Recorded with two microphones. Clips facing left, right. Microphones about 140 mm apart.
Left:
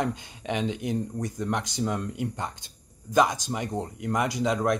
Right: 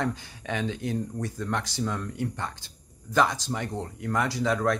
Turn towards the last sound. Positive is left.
turn(degrees=15)  # may be behind; listen again after turning